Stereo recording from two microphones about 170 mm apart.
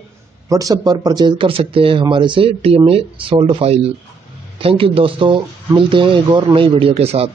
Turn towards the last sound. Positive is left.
turn(degrees=-35)  # may be behind; listen again after turning